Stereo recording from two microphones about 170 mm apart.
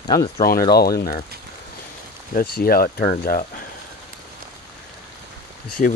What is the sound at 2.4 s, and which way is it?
Speech, 60° left (ahead or behind).